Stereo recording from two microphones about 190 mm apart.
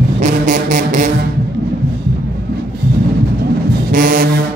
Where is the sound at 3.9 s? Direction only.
45° right (ahead or behind).